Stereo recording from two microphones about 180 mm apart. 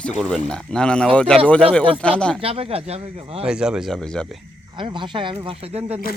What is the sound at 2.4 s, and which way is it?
Speech, 30° right (ahead or behind).